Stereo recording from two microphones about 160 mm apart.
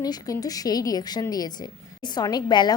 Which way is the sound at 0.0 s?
25° left (ahead or behind).